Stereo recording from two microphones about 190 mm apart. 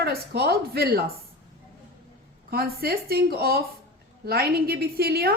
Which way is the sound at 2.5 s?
55° right (ahead or behind).